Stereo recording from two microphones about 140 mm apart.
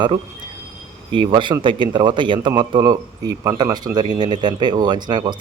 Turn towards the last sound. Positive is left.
turn(degrees=-30)  # may be behind; listen again after turning